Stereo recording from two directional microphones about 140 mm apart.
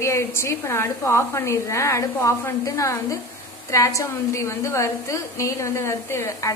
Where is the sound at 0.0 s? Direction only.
20° left (ahead or behind).